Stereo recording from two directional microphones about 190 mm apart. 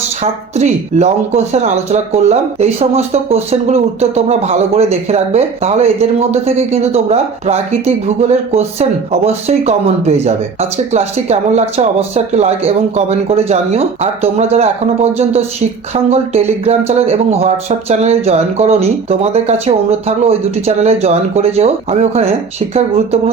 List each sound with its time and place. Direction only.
0.5 s speech: 35° right (ahead or behind)